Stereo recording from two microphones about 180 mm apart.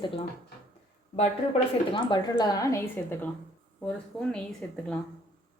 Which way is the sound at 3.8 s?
5° left (ahead or behind).